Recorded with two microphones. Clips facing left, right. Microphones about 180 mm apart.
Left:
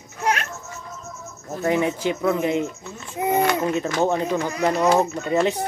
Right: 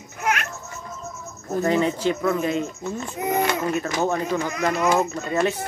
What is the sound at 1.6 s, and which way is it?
Speech, 10° left (ahead or behind).